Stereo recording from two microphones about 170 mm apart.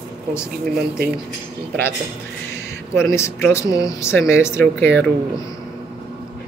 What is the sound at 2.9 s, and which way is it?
Speech, 15° left (ahead or behind).